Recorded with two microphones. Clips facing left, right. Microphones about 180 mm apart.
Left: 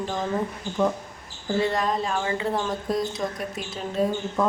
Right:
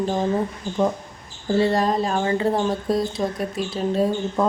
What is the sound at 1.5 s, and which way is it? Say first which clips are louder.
Speech: right 5 dB; 35° right (ahead or behind).